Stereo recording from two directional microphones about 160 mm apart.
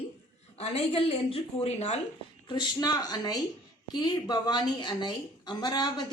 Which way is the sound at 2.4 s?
25° left (ahead or behind).